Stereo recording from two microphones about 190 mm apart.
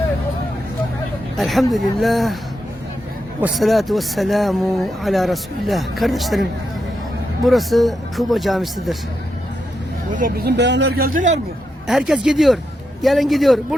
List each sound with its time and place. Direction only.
1.4 s speech: centre (ahead or behind)
3.4 s speech: centre (ahead or behind)
7.4 s speech: centre (ahead or behind)
10.2 s speech: 50° right (ahead or behind)
11.9 s speech: 5° right (ahead or behind)